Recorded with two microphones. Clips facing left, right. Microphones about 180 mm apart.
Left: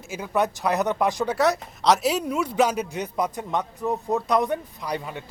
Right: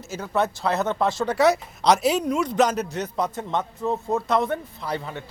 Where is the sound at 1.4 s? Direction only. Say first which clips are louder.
Right 3 dB; centre (ahead or behind).